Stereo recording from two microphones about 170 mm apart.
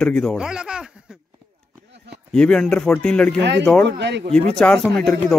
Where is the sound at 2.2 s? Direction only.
5° left (ahead or behind).